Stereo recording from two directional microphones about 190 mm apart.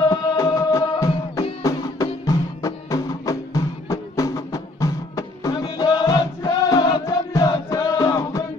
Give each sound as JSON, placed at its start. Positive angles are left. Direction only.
{"t": 0.1, "sound": "music", "side_deg": 20}